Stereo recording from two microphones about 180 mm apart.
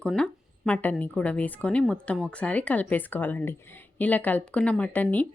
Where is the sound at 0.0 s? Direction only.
5° left (ahead or behind).